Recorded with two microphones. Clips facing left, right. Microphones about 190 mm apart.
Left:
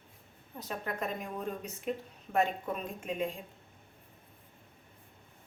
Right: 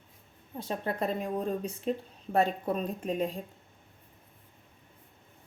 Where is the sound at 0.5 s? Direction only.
30° right (ahead or behind).